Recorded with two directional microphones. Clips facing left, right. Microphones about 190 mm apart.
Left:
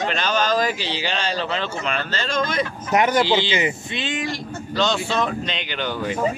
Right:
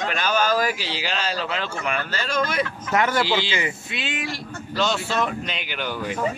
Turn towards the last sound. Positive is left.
turn(degrees=-5)  # may be behind; listen again after turning